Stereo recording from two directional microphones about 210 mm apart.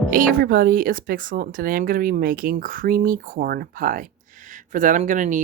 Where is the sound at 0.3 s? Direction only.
45° right (ahead or behind).